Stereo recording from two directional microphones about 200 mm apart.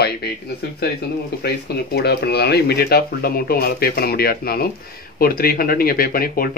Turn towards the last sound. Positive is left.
turn(degrees=45)  # may be behind; listen again after turning